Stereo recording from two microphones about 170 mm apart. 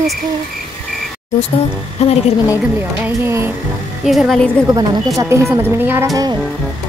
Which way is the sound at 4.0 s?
Centre (ahead or behind).